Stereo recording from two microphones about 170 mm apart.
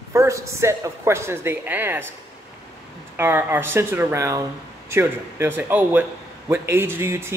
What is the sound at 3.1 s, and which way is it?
Speech, 10° right (ahead or behind).